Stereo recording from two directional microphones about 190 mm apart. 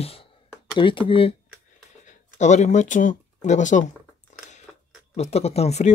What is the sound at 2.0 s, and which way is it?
Speech, 40° left (ahead or behind).